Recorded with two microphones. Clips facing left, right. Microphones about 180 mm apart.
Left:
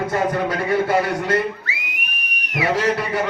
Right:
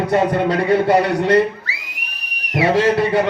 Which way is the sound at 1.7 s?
35° right (ahead or behind).